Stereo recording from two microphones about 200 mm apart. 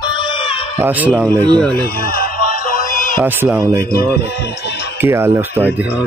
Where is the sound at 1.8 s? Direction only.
50° left (ahead or behind).